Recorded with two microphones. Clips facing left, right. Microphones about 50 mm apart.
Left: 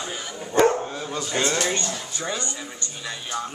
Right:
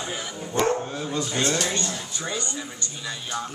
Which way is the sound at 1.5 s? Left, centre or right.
Left.